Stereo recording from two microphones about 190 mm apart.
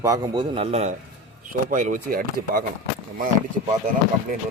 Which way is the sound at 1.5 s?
45° right (ahead or behind).